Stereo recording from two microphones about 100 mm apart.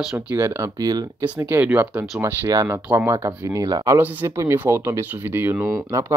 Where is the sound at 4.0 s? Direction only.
20° right (ahead or behind).